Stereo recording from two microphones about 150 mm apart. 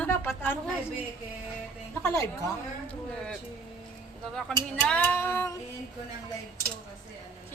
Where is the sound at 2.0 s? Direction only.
20° left (ahead or behind).